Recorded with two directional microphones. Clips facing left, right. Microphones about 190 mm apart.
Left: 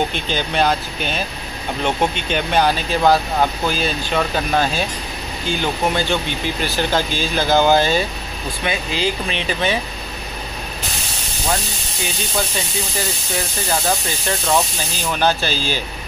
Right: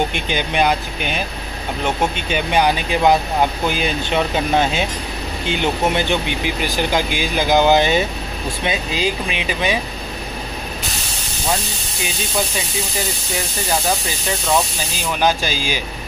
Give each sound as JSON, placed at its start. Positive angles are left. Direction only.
{"t": 0.1, "sound": "speech", "side_deg": -15}
{"t": 9.0, "sound": "speech", "side_deg": -10}
{"t": 15.0, "sound": "speech", "side_deg": -10}